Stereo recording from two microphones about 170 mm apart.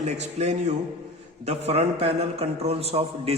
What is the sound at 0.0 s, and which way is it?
A man's voice, 40° right (ahead or behind).